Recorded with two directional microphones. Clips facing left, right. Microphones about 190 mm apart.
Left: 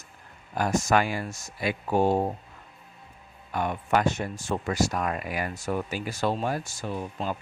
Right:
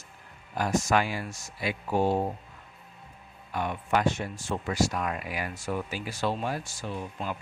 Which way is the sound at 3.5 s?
45° left (ahead or behind).